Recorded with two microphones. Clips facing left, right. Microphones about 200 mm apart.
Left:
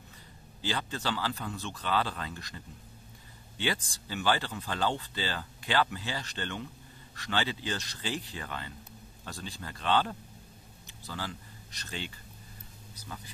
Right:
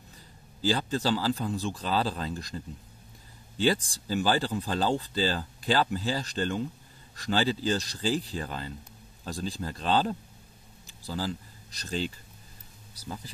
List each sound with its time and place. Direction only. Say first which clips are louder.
0.6 s speech: right 7 dB; 35° right (ahead or behind)